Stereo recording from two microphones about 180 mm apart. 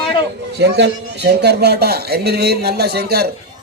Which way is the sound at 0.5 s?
70° right (ahead or behind).